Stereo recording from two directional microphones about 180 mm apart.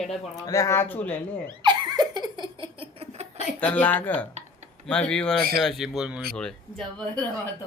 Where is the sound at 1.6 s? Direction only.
25° right (ahead or behind).